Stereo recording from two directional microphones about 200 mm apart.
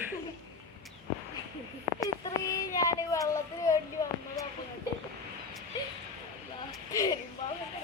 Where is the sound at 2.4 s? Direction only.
15° left (ahead or behind).